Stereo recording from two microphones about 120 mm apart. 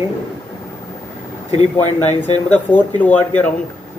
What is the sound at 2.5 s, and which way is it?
Speech, 15° left (ahead or behind).